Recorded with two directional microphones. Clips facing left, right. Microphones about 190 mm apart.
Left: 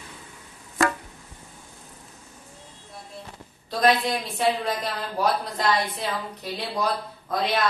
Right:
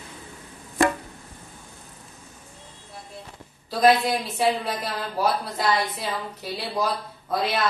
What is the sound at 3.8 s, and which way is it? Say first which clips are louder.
A woman's voice: right 3 dB; centre (ahead or behind).